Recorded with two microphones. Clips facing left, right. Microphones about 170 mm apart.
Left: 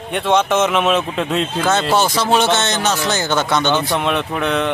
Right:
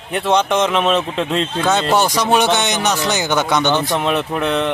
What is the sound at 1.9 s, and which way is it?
Speech, 15° right (ahead or behind).